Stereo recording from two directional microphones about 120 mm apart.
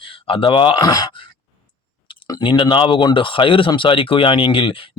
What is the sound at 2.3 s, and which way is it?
Speech, 40° left (ahead or behind).